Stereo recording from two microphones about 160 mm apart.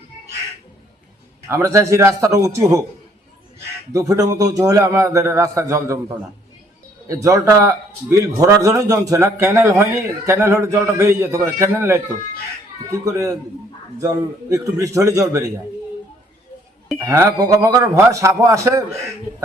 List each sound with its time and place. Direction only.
1.5 s a man's voice: 20° right (ahead or behind)
3.9 s a man's voice: 20° right (ahead or behind)
7.1 s a man's voice: 20° right (ahead or behind)
14.5 s a man's voice: 20° right (ahead or behind)
17.0 s a man's voice: 20° right (ahead or behind)